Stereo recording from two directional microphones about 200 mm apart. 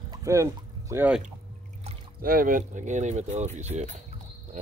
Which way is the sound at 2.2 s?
45° right (ahead or behind).